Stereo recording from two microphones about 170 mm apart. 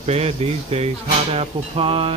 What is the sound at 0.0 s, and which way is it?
Music, 35° right (ahead or behind).